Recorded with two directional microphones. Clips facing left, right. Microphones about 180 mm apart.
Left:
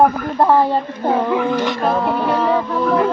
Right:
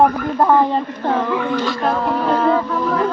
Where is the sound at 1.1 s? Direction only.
20° left (ahead or behind).